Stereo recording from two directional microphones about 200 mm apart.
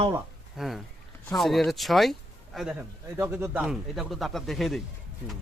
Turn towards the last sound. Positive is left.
turn(degrees=0)  # may be behind; listen again after turning